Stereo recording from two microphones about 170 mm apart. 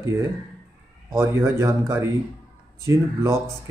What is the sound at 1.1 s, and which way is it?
Speech, 15° right (ahead or behind).